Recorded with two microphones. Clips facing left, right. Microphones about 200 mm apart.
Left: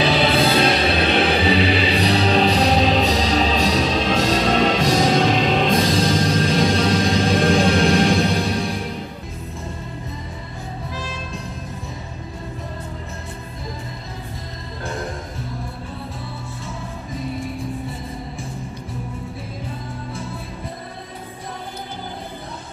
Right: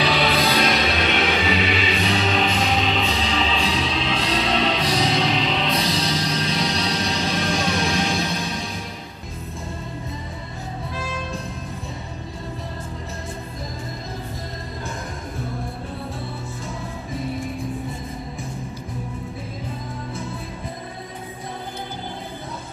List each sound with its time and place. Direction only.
0.0 s music: 30° left (ahead or behind); by 8.7 s 60° left (ahead or behind)